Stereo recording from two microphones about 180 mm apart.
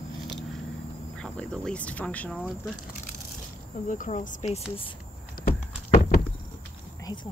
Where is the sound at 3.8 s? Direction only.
45° left (ahead or behind).